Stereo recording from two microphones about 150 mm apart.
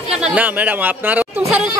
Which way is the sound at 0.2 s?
10° right (ahead or behind).